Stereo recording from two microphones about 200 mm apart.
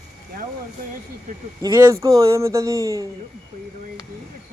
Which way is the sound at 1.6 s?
15° right (ahead or behind).